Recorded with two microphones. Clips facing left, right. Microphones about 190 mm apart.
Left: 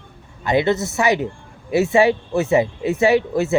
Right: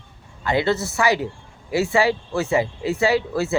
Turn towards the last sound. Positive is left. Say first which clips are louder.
# left 4 dB
turn(degrees=20)  # may be behind; listen again after turning